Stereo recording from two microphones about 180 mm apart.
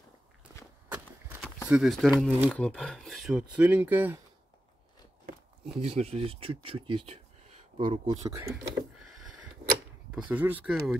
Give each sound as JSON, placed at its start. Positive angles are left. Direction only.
{"t": 0.5, "sound": "walk", "side_deg": -15}
{"t": 0.8, "sound": "a sound", "side_deg": -10}
{"t": 1.7, "sound": "speech", "side_deg": 0}
{"t": 5.8, "sound": "speech", "side_deg": -35}
{"t": 8.2, "sound": "speech", "side_deg": -15}
{"t": 9.0, "sound": "a sound", "side_deg": 0}
{"t": 10.1, "sound": "speech", "side_deg": -10}